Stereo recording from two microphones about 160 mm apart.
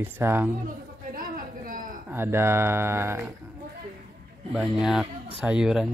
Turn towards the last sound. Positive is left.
turn(degrees=-5)  # may be behind; listen again after turning